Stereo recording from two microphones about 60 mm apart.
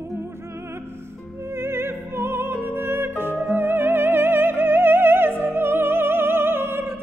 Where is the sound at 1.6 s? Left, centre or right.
Right.